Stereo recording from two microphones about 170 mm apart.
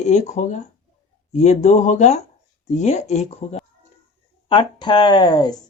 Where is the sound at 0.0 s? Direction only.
40° left (ahead or behind).